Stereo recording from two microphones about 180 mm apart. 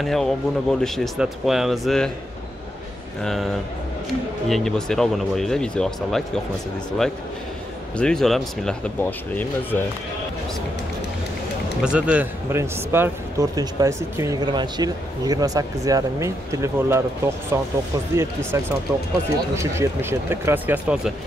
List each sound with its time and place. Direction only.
0.0 s speech: centre (ahead or behind)
3.2 s speech: centre (ahead or behind)
8.0 s speech: 5° left (ahead or behind)
11.8 s a man's voice: 5° right (ahead or behind)